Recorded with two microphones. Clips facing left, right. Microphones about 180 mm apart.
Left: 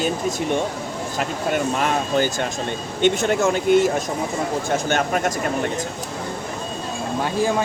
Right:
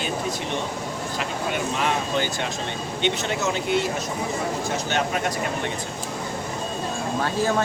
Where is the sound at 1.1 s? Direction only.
45° left (ahead or behind).